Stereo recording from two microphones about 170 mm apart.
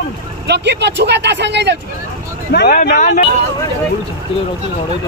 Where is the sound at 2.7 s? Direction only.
50° left (ahead or behind).